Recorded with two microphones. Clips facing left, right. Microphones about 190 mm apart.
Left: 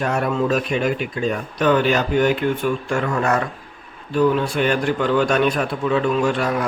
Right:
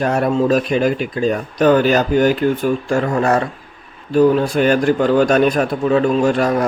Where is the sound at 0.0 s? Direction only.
35° right (ahead or behind).